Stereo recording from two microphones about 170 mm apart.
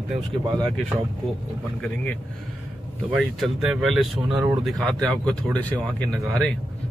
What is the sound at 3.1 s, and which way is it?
Speech, centre (ahead or behind).